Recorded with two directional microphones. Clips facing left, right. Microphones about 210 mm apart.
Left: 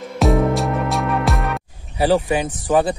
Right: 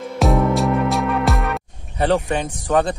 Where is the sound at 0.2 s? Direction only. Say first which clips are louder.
Even; centre (ahead or behind).